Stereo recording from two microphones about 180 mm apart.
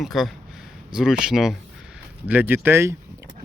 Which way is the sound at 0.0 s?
Centre (ahead or behind).